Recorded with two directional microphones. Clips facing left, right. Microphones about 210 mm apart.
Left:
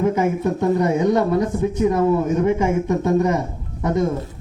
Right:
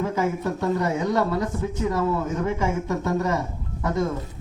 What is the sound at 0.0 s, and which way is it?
A man's voice, 20° left (ahead or behind).